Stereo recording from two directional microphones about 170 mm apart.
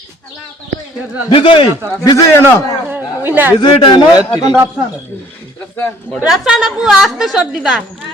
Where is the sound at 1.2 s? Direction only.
30° left (ahead or behind).